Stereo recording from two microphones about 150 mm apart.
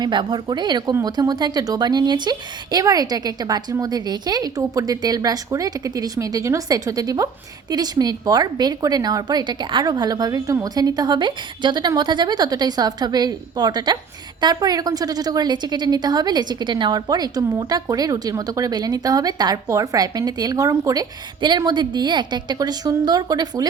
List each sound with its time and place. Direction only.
0.0 s a woman's voice: 30° right (ahead or behind)